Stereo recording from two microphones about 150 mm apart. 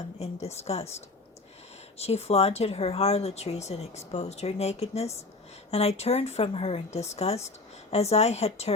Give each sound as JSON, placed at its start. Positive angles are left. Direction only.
{"t": 0.2, "sound": "speech", "side_deg": 45}
{"t": 2.0, "sound": "speech", "side_deg": 45}